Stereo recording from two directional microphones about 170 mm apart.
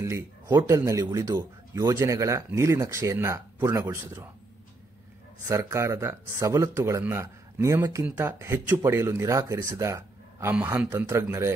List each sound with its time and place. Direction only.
0.0 s speech: 15° right (ahead or behind)
5.5 s speech: 15° right (ahead or behind)